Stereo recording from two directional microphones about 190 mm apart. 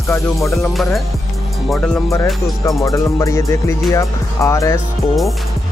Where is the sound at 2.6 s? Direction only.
15° left (ahead or behind).